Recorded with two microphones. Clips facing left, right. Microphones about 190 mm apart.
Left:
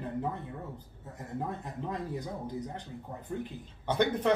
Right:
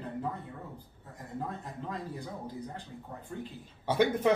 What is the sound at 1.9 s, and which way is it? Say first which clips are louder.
Speech: left 3 dB; 20° left (ahead or behind).